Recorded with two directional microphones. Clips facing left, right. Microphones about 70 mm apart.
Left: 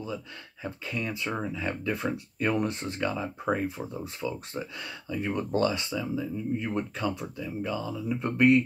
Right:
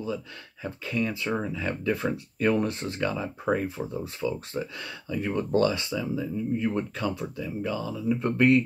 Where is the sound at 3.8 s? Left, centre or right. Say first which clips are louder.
Right 3 dB; centre.